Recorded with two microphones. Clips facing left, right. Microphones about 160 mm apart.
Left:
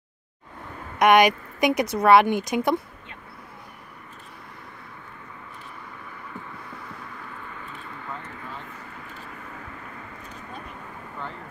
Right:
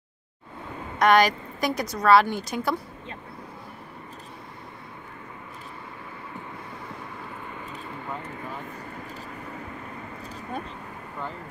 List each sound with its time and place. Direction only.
0.9 s speech: 20° left (ahead or behind)
8.7 s vehicle: 40° right (ahead or behind)